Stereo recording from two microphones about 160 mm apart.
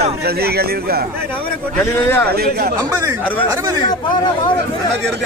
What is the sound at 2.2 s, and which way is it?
Speech, 75° right (ahead or behind).